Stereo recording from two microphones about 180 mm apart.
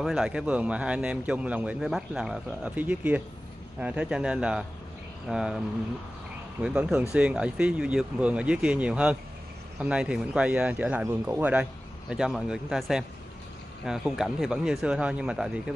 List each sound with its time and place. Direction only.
0.0 s a man's voice: 5° right (ahead or behind)
6.6 s a man's voice: 5° right (ahead or behind)